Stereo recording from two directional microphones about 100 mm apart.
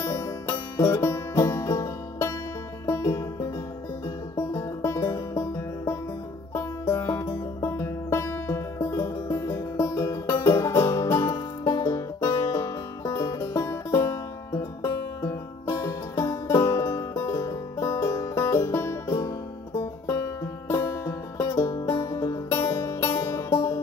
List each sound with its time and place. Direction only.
0.0 s music: 30° left (ahead or behind)
11.1 s music: 40° left (ahead or behind)
20.8 s music: 35° left (ahead or behind)
22.0 s music: 35° left (ahead or behind)
22.5 s music: 25° left (ahead or behind)
23.5 s music: 45° left (ahead or behind)